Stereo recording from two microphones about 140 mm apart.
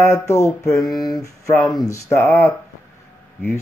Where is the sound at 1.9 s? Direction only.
20° left (ahead or behind).